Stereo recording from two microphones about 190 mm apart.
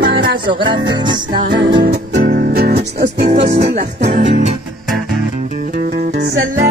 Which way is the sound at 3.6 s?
60° right (ahead or behind).